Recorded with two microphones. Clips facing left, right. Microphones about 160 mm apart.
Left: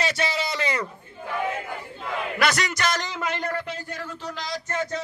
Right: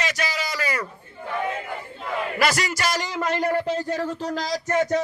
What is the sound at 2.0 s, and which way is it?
Speech, 5° right (ahead or behind).